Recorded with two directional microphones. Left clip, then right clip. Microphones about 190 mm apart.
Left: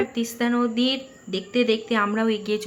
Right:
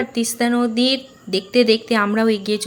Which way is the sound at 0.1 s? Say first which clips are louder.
Right 5 dB; 20° right (ahead or behind).